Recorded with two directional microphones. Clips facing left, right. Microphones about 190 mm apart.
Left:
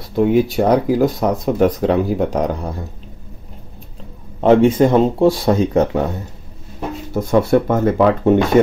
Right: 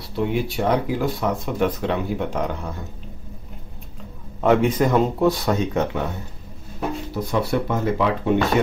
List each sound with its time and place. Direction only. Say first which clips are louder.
0.1 s speech: left 9 dB; 45° left (ahead or behind)
4.4 s speech: left 6 dB; 30° left (ahead or behind)
7.2 s speech: left 9 dB; 50° left (ahead or behind)